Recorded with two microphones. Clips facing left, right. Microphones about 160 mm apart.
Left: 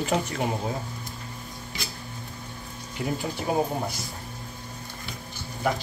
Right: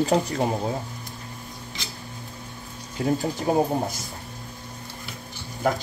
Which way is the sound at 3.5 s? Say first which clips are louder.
Right 4 dB; 40° right (ahead or behind).